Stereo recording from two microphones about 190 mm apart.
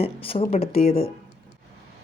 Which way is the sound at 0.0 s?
30° left (ahead or behind).